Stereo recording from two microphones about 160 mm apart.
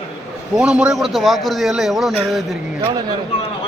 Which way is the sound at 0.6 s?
5° right (ahead or behind).